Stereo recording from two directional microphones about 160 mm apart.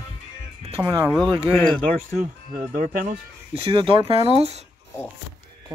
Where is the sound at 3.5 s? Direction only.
35° right (ahead or behind).